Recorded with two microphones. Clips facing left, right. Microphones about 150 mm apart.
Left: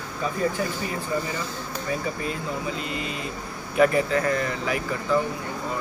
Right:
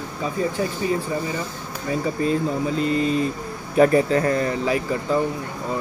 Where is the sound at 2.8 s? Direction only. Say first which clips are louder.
Right 10 dB; 35° right (ahead or behind).